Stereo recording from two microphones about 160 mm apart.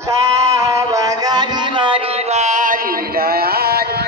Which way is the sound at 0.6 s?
20° right (ahead or behind).